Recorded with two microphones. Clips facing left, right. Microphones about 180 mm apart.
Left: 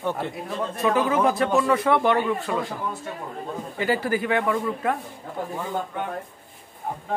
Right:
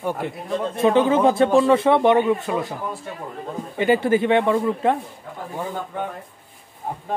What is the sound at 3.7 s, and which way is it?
Speech, 20° right (ahead or behind).